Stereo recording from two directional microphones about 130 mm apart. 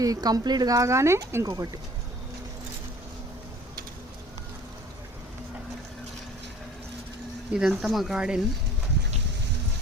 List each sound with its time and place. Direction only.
0.0 s speech: 30° right (ahead or behind)
7.5 s speech: 5° right (ahead or behind)